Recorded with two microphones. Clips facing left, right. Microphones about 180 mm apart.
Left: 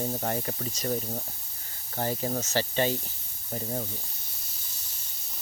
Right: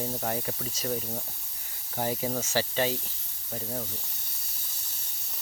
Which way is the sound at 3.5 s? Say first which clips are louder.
Left 2 dB; 10° left (ahead or behind).